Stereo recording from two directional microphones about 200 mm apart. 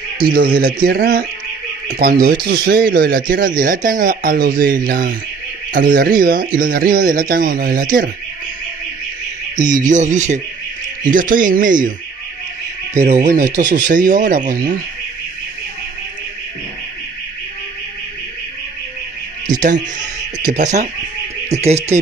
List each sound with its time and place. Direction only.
0.3 s speech: 45° right (ahead or behind)
9.8 s speech: 40° right (ahead or behind)
13.0 s speech: 40° right (ahead or behind)
20.5 s speech: 35° right (ahead or behind)